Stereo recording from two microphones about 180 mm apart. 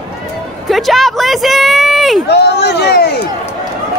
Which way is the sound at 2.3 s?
65° left (ahead or behind).